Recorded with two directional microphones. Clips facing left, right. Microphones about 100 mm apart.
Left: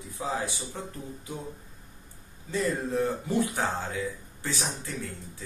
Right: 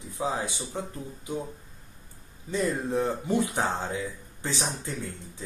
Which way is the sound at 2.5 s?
20° right (ahead or behind).